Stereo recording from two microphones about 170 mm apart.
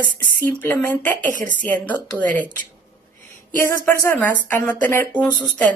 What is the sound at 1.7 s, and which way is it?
Speech, 10° left (ahead or behind).